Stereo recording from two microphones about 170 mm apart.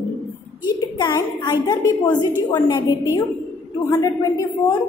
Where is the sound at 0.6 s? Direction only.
25° left (ahead or behind).